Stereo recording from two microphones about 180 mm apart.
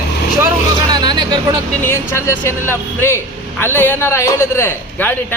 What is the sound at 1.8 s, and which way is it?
Speech, 15° left (ahead or behind).